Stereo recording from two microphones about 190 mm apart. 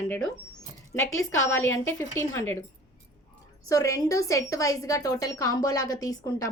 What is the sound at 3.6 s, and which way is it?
Speech, 15° left (ahead or behind).